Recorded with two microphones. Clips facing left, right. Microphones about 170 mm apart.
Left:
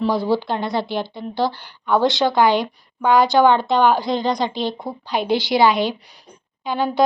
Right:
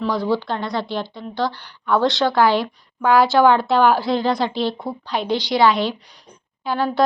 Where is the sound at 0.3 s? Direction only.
5° left (ahead or behind).